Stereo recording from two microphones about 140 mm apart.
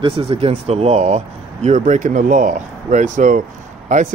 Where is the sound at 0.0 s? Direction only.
45° right (ahead or behind).